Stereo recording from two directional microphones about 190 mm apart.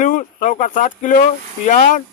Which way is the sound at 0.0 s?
45° left (ahead or behind).